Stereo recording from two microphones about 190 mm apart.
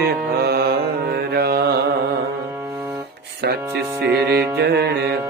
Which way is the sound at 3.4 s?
60° right (ahead or behind).